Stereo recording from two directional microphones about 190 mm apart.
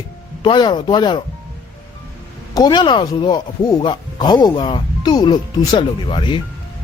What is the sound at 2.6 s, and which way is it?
Speech, 25° left (ahead or behind).